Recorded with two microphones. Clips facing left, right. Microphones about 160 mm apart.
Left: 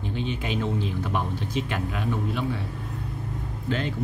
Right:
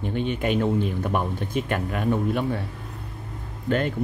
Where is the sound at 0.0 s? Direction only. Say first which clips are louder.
Right 5 dB; 55° right (ahead or behind).